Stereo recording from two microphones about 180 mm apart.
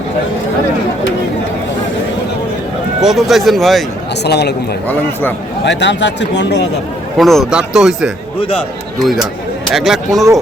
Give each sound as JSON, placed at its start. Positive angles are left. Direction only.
{"t": 3.0, "sound": "speech", "side_deg": 0}
{"t": 4.2, "sound": "speech", "side_deg": 70}
{"t": 5.6, "sound": "speech", "side_deg": 80}
{"t": 7.2, "sound": "speech", "side_deg": 0}
{"t": 8.4, "sound": "speech", "side_deg": 30}
{"t": 9.7, "sound": "speech", "side_deg": 0}